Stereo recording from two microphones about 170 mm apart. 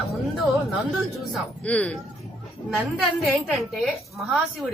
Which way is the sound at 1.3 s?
5° left (ahead or behind).